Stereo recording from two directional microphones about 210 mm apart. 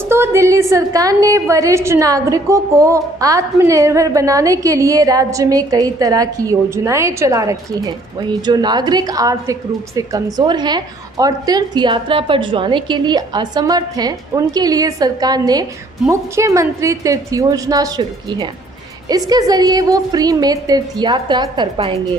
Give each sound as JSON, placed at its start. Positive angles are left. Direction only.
{"t": 0.1, "sound": "a woman's voice", "side_deg": -15}